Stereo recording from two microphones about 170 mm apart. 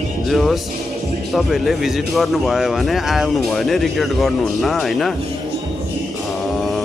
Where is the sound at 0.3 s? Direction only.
Centre (ahead or behind).